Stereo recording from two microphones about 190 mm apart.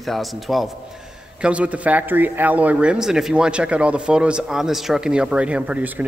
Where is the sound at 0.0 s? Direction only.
Centre (ahead or behind).